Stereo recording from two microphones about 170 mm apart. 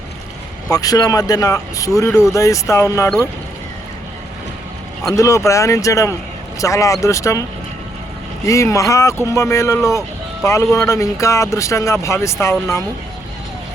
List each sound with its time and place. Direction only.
0.7 s speech: 20° left (ahead or behind)
5.1 s speech: 15° left (ahead or behind)
8.4 s speech: 20° left (ahead or behind)